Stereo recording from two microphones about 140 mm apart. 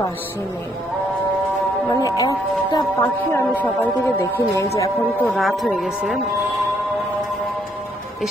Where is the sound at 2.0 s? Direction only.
25° left (ahead or behind).